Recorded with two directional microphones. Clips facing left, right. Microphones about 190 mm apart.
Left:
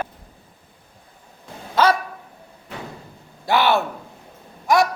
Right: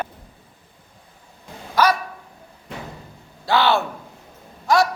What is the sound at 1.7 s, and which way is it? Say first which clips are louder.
Dog: left 1 dB; 25° left (ahead or behind).